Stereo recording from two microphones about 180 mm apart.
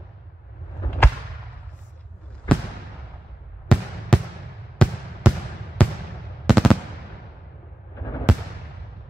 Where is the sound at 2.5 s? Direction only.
5° left (ahead or behind).